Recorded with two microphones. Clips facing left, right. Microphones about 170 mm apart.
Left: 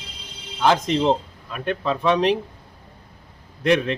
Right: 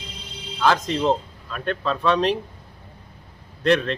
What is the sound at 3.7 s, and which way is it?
Speech, 15° left (ahead or behind).